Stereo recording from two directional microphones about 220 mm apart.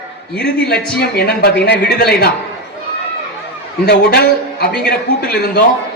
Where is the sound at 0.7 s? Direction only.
45° left (ahead or behind).